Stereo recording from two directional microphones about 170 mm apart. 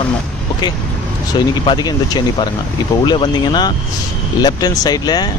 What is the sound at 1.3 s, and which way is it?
Speech, 25° left (ahead or behind).